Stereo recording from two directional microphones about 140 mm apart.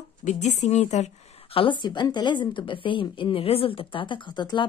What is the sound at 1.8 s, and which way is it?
A woman's voice, 35° left (ahead or behind).